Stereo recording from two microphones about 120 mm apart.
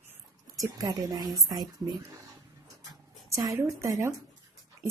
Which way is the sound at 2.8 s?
30° right (ahead or behind).